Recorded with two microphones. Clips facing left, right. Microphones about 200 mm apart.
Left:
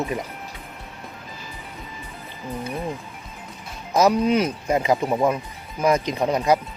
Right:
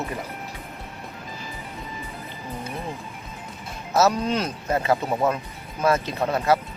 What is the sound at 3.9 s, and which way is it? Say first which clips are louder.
Speech: left 3 dB; 10° left (ahead or behind).